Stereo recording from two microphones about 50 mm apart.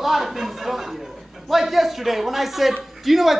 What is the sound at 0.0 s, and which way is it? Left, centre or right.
A man's voice, centre.